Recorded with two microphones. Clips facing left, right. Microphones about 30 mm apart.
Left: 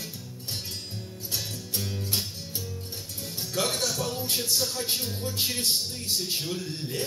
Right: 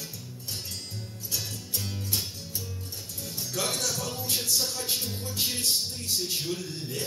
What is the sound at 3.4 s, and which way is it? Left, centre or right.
Music, left.